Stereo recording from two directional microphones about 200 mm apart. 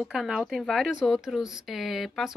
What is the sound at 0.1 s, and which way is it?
Speech, centre (ahead or behind).